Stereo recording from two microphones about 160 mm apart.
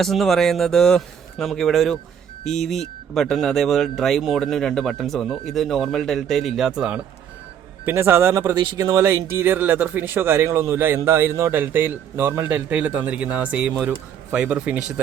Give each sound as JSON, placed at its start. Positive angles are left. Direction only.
{"t": 0.0, "sound": "speech", "side_deg": 0}
{"t": 3.2, "sound": "a man's voice", "side_deg": 0}